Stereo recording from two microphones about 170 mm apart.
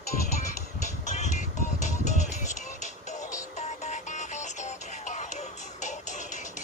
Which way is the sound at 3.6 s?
45° left (ahead or behind).